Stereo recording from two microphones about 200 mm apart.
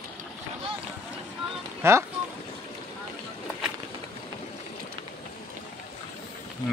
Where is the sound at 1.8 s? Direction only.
15° right (ahead or behind).